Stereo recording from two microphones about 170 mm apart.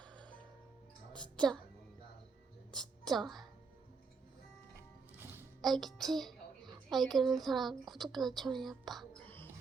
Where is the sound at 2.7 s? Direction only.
Centre (ahead or behind).